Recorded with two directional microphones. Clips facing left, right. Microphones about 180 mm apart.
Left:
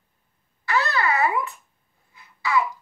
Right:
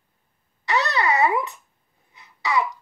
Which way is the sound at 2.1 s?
20° right (ahead or behind).